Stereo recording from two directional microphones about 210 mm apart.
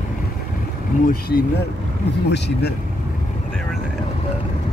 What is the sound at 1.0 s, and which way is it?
Speech, 45° left (ahead or behind).